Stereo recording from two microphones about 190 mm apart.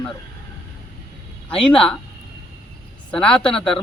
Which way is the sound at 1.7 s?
5° left (ahead or behind).